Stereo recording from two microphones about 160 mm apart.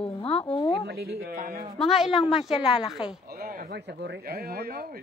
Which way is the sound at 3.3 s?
65° right (ahead or behind).